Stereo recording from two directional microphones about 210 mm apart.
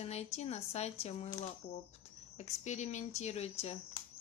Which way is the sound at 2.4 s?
35° left (ahead or behind).